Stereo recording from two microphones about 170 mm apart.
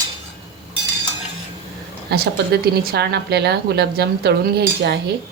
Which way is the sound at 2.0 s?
70° right (ahead or behind).